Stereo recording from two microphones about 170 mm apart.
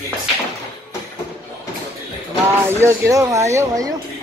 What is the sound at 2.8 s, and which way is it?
A woman's voice, 15° right (ahead or behind).